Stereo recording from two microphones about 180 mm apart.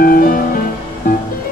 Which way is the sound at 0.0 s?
55° left (ahead or behind).